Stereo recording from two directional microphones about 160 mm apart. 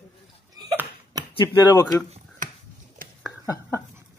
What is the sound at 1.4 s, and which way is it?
Speech, 25° left (ahead or behind).